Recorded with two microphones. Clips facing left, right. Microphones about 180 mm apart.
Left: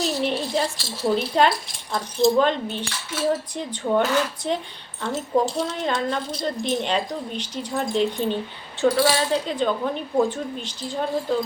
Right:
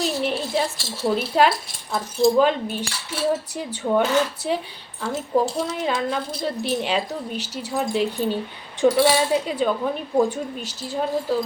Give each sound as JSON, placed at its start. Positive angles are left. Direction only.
{"t": 0.0, "sound": "a woman's voice", "side_deg": 0}
{"t": 8.8, "sound": "speech", "side_deg": -20}
{"t": 9.3, "sound": "a woman's voice", "side_deg": -10}